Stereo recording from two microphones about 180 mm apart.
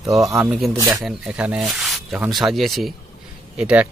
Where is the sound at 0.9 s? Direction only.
Centre (ahead or behind).